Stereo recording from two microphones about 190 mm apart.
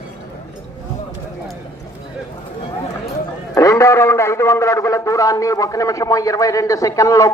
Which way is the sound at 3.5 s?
15° left (ahead or behind).